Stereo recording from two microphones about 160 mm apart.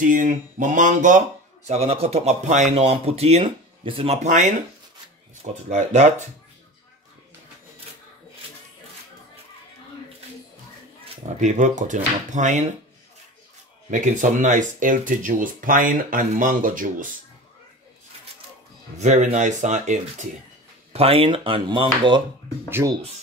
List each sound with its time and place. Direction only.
0.0 s speech: 55° right (ahead or behind)
1.7 s speech: 40° right (ahead or behind)
5.7 s speech: 45° right (ahead or behind)
11.2 s speech: 50° right (ahead or behind)
13.8 s speech: 50° right (ahead or behind)
18.9 s speech: 50° right (ahead or behind)
20.9 s speech: 35° right (ahead or behind)
22.7 s speech: 15° right (ahead or behind)